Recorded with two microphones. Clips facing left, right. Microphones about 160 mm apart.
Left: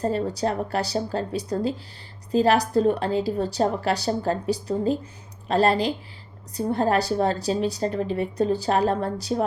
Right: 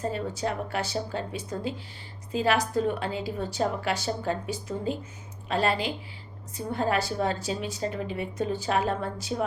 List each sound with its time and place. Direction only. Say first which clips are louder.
0.0 s a woman's voice: left 5 dB; 35° left (ahead or behind)